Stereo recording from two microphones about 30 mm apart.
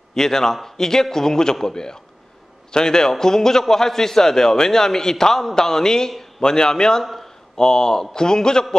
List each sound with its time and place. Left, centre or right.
0.1 s a man's voice: centre